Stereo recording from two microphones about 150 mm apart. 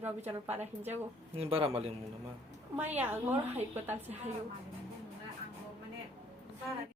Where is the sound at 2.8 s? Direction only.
10° right (ahead or behind).